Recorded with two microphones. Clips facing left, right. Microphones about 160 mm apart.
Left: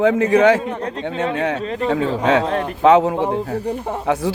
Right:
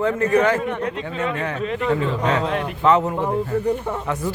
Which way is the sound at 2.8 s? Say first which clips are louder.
Left 5 dB; 90° left.